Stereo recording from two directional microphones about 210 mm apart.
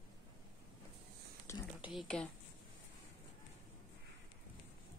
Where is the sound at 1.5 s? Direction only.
15° left (ahead or behind).